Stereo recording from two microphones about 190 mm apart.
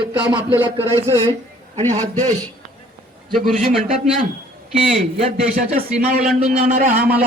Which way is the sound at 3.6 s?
45° right (ahead or behind).